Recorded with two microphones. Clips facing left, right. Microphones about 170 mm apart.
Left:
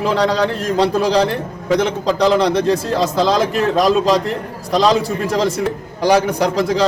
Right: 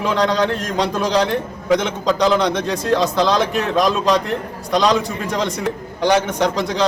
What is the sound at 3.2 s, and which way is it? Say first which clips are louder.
Speech: left 2 dB; centre (ahead or behind).